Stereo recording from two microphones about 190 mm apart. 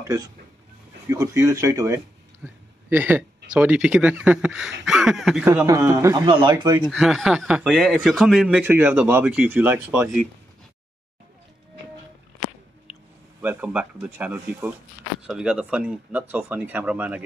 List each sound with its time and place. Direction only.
0.0 s speech: 15° right (ahead or behind)
2.4 s a sound: 10° right (ahead or behind)
3.5 s speech: 5° right (ahead or behind)
5.5 s speech: 15° right (ahead or behind)
6.9 s speech: centre (ahead or behind)
12.9 s a sound: 5° right (ahead or behind)
13.4 s speech: 10° right (ahead or behind)